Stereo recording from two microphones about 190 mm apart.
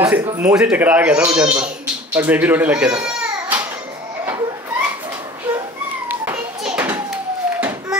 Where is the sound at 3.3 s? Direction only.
10° right (ahead or behind).